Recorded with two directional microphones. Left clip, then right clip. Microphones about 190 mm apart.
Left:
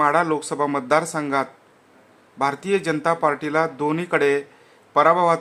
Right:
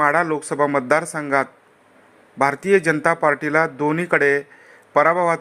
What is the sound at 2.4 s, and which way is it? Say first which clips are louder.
A man's voice: right 5 dB; 20° right (ahead or behind).